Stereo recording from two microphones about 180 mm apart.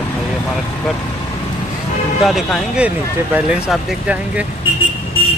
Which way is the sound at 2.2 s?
Centre (ahead or behind).